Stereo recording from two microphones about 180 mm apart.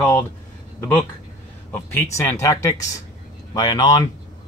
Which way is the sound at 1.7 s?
15° left (ahead or behind).